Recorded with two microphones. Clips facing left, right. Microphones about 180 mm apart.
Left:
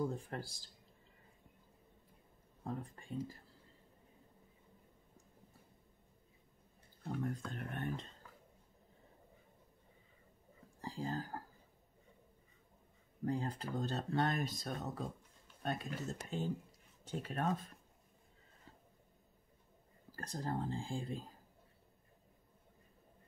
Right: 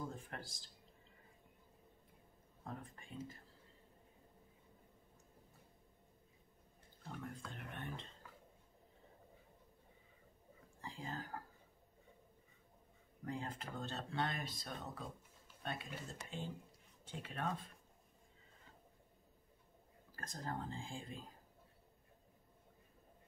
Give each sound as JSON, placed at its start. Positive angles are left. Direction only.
{"t": 0.1, "sound": "speech", "side_deg": 35}
{"t": 2.6, "sound": "speech", "side_deg": 35}
{"t": 7.5, "sound": "speech", "side_deg": 45}
{"t": 10.8, "sound": "a sound", "side_deg": 35}
{"t": 13.2, "sound": "speech", "side_deg": 35}
{"t": 20.2, "sound": "speech", "side_deg": 35}